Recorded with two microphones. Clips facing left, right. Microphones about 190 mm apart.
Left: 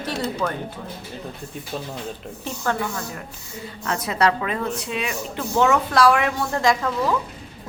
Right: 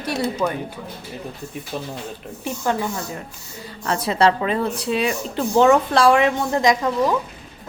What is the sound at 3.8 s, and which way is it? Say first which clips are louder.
A woman's voice: right 3 dB; 30° right (ahead or behind).